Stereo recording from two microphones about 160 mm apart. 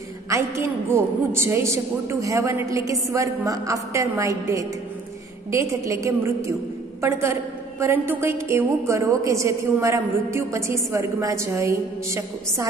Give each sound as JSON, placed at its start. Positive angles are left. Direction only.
{"t": 0.3, "sound": "a man's voice", "side_deg": -15}